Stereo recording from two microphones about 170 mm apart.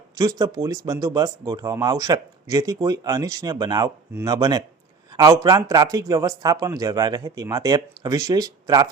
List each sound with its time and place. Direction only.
0.2 s speech: 20° right (ahead or behind)